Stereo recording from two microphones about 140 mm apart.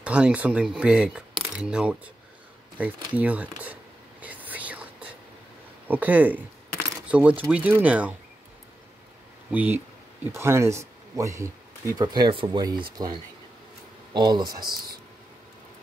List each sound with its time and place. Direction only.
0.0 s speech: 10° right (ahead or behind)
4.2 s whispering: 10° right (ahead or behind)
5.9 s speech: 10° right (ahead or behind)
9.5 s speech: 10° right (ahead or behind); by 15.0 s 30° right (ahead or behind)